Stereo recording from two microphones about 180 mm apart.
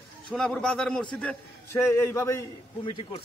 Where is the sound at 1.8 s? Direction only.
15° left (ahead or behind).